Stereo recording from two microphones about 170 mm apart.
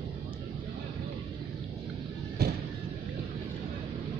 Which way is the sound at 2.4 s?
70° right (ahead or behind).